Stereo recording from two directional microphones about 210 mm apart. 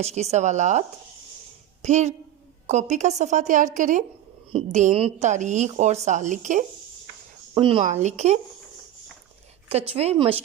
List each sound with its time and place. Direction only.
0.0 s a woman's voice: 30° right (ahead or behind)
7.5 s a woman's voice: 25° right (ahead or behind)
9.6 s speech: 30° right (ahead or behind)